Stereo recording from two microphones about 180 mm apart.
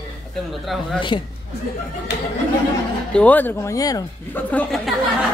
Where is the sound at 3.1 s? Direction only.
5° left (ahead or behind).